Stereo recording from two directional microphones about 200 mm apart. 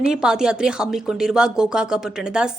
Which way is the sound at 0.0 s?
5° right (ahead or behind).